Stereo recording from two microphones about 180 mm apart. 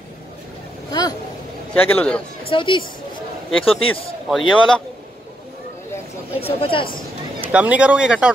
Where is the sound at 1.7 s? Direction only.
5° left (ahead or behind).